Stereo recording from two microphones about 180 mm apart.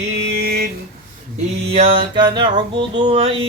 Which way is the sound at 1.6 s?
30° right (ahead or behind).